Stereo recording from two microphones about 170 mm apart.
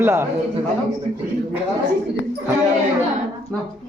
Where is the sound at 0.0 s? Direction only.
15° right (ahead or behind).